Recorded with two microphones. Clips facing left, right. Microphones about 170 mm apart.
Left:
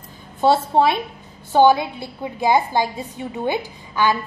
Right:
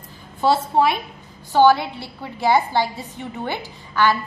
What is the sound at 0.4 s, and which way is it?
A woman's voice, 25° left (ahead or behind).